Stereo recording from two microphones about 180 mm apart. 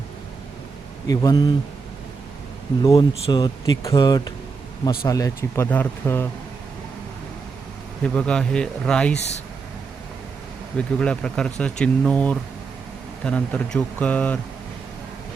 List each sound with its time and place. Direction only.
1.0 s speech: 20° left (ahead or behind)
2.8 s speech: 25° left (ahead or behind)
8.0 s speech: 5° left (ahead or behind)
10.8 s speech: 5° left (ahead or behind)